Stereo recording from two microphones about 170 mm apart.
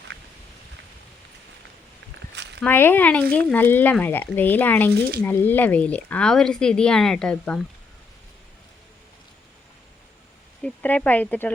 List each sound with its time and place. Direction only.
2.3 s a sound: 90° right
2.6 s speech: 10° left (ahead or behind)
10.6 s speech: 10° left (ahead or behind)